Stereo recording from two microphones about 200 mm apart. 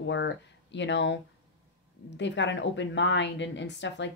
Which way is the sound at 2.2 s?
65° left (ahead or behind).